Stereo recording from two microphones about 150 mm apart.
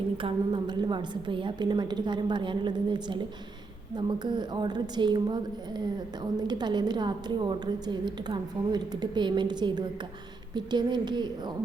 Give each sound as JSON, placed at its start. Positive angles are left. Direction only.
{"t": 0.2, "sound": "a woman's voice", "side_deg": -30}